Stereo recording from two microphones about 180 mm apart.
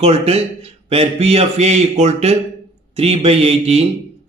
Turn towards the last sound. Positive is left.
turn(degrees=-35)  # may be behind; listen again after turning